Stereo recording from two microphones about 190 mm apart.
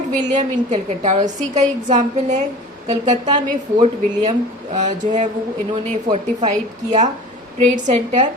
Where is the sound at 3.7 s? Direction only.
35° right (ahead or behind).